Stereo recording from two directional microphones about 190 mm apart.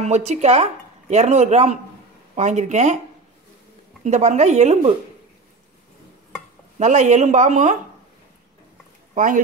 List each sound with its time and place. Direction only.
0.0 s speech: 35° right (ahead or behind)
4.0 s speech: 35° right (ahead or behind)
6.8 s speech: 40° right (ahead or behind)
9.1 s speech: 45° right (ahead or behind)